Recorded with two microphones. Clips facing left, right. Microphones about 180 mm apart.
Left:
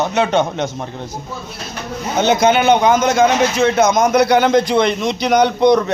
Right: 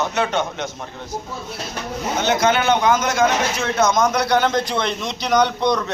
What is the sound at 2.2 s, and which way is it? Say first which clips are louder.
A man's voice: left 5 dB; 20° left (ahead or behind).